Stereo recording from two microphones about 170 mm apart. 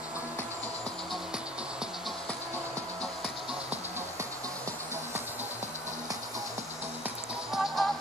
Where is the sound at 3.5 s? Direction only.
10° right (ahead or behind).